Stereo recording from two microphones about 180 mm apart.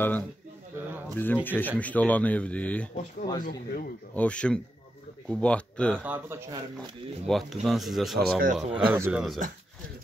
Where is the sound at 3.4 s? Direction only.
50° left (ahead or behind).